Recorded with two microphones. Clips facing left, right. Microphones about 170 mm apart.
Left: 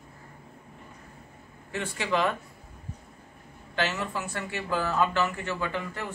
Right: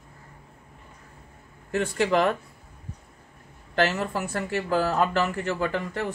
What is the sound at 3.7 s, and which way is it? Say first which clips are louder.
Speech: right 5 dB; 45° right (ahead or behind).